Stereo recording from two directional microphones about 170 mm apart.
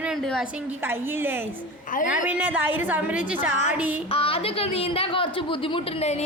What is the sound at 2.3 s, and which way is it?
A woman's voice, 10° right (ahead or behind).